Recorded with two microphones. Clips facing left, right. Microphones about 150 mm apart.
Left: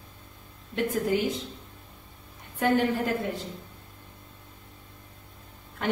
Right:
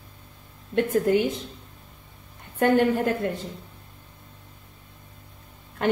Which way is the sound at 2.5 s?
55° right (ahead or behind).